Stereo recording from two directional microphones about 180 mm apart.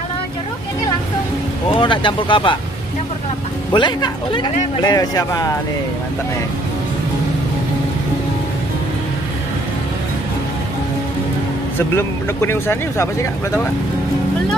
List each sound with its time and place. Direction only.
1.7 s speech: 30° left (ahead or behind)
3.7 s speech: 25° left (ahead or behind)
11.9 s speech: 15° left (ahead or behind)